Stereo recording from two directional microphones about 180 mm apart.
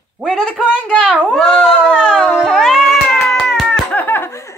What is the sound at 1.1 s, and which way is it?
Cat, centre (ahead or behind).